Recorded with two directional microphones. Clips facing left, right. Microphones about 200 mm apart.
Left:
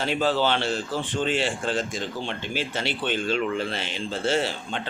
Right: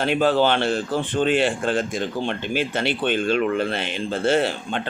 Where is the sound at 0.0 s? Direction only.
55° right (ahead or behind).